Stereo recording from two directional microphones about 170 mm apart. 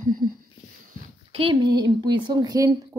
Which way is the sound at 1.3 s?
30° right (ahead or behind).